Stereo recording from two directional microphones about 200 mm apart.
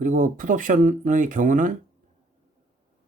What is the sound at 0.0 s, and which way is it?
Speech, 40° right (ahead or behind).